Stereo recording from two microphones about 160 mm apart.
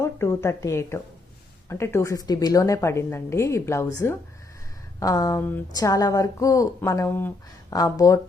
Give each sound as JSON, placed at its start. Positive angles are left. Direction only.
{"t": 0.0, "sound": "a woman's voice", "side_deg": 15}
{"t": 4.9, "sound": "a woman's voice", "side_deg": 20}